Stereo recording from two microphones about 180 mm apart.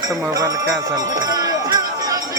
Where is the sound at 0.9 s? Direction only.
20° right (ahead or behind).